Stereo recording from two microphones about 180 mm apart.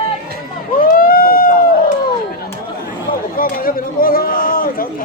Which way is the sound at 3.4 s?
55° left (ahead or behind).